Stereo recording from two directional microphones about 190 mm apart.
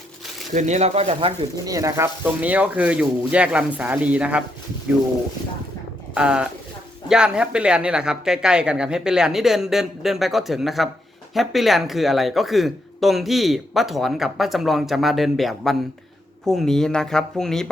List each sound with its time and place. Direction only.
0.5 s speech: 40° right (ahead or behind)
1.6 s speech: 15° right (ahead or behind)
6.1 s speech: 5° right (ahead or behind)